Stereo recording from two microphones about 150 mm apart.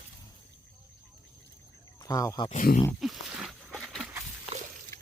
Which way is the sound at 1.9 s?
20° left (ahead or behind).